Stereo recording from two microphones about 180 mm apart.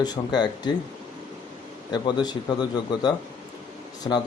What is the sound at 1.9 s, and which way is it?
Speech, 25° left (ahead or behind).